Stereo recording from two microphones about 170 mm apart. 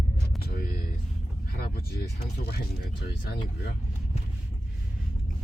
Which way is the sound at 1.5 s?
60° left (ahead or behind).